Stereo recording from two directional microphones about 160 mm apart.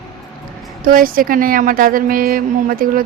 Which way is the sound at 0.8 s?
60° right (ahead or behind).